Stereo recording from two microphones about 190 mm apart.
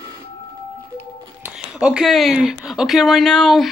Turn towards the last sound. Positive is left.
turn(degrees=0)  # may be behind; listen again after turning